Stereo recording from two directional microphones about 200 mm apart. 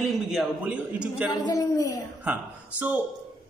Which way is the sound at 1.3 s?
20° left (ahead or behind).